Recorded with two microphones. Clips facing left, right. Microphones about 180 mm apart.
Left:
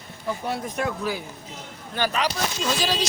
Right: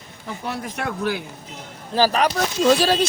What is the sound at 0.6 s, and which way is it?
Speech, 70° right (ahead or behind).